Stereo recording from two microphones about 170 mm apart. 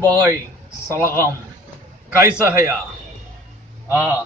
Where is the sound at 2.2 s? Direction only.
15° right (ahead or behind).